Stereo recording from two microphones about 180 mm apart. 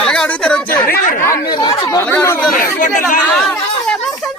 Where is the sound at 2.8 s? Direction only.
50° left (ahead or behind).